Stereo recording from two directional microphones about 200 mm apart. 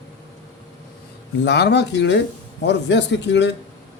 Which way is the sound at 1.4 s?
55° left (ahead or behind).